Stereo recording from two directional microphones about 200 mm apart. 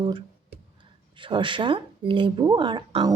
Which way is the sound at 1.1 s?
25° right (ahead or behind).